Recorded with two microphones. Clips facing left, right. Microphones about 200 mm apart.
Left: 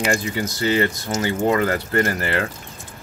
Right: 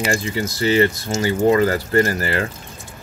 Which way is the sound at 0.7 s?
30° right (ahead or behind).